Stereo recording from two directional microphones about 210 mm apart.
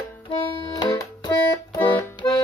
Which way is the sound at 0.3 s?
20° left (ahead or behind).